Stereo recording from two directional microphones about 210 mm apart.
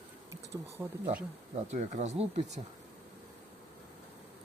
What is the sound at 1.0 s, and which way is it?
Speech, 35° right (ahead or behind).